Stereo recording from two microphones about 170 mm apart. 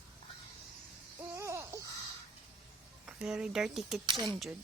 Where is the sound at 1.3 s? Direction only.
15° right (ahead or behind).